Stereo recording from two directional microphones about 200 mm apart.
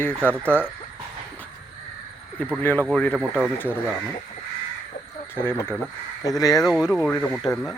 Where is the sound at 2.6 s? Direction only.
10° left (ahead or behind).